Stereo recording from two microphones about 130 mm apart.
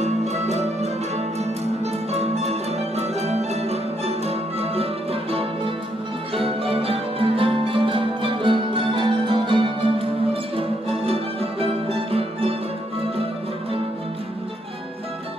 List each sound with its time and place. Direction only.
0.0 s music: 60° right (ahead or behind)